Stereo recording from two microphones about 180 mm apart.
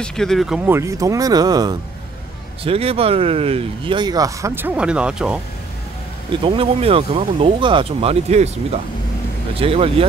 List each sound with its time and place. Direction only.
0.0 s speech: 5° left (ahead or behind)
0.7 s speech: 15° right (ahead or behind)
2.6 s speech: 30° right (ahead or behind); by 5.4 s 5° right (ahead or behind)
6.4 s speech: 30° right (ahead or behind)